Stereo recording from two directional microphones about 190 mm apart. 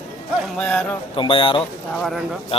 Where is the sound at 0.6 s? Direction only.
5° left (ahead or behind).